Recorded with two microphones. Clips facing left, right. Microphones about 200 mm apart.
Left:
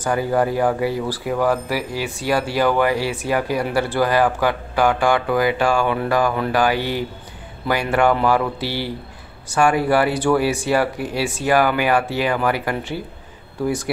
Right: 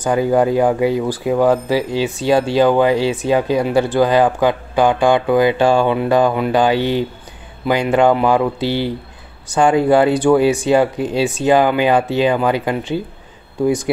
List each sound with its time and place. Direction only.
0.0 s speech: 20° right (ahead or behind)